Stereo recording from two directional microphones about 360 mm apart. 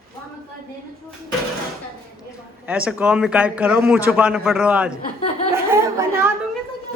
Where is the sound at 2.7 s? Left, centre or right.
Centre.